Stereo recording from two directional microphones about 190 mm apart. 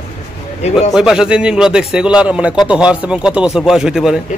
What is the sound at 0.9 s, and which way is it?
A man's voice, 5° right (ahead or behind).